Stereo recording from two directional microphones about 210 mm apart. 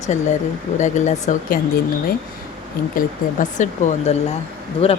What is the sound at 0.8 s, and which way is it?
Speech, 35° left (ahead or behind).